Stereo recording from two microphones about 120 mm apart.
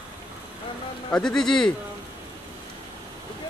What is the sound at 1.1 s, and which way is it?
Speech, 5° left (ahead or behind).